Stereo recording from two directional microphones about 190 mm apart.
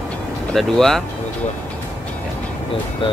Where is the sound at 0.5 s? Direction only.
Centre (ahead or behind).